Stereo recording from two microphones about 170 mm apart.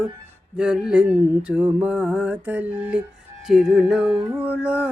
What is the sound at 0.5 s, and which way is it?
Music, 5° right (ahead or behind).